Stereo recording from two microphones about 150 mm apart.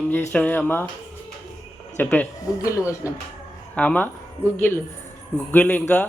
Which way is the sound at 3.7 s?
10° left (ahead or behind).